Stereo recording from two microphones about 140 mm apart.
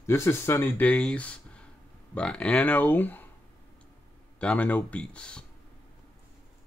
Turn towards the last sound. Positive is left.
turn(degrees=5)  # may be behind; listen again after turning